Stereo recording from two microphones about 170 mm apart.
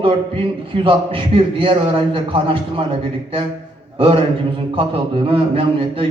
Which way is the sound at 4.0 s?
30° right (ahead or behind).